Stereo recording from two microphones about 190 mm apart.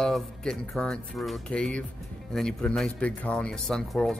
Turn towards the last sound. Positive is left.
turn(degrees=5)  # may be behind; listen again after turning